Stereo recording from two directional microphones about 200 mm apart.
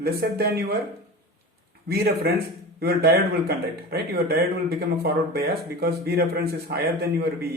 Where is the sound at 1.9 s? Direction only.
50° right (ahead or behind).